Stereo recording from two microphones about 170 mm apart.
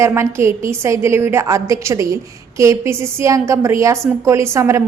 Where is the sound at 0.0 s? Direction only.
15° right (ahead or behind).